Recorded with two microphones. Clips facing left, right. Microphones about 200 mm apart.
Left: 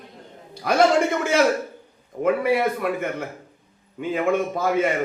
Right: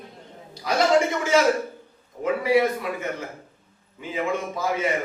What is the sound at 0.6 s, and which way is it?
A man's voice, 55° left (ahead or behind).